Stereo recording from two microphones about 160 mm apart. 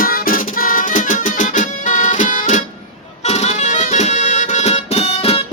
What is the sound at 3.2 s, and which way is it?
Music, 45° left (ahead or behind).